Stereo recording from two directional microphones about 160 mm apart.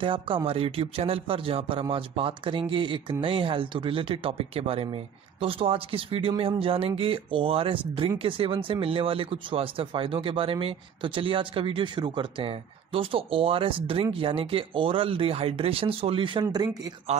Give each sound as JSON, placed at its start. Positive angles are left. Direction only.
{"t": 0.0, "sound": "speech", "side_deg": -30}
{"t": 16.4, "sound": "speech", "side_deg": -25}